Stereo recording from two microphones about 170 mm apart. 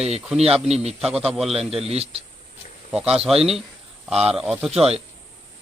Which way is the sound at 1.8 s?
35° right (ahead or behind).